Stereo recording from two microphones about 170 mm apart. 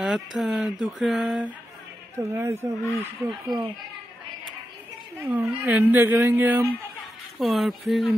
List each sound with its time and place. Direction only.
0.0 s speech: centre (ahead or behind)
2.1 s speech: 15° right (ahead or behind)
5.3 s speech: 10° right (ahead or behind)
7.3 s speech: centre (ahead or behind)